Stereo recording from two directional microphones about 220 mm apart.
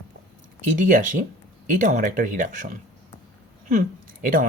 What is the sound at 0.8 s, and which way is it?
Speech, 35° right (ahead or behind).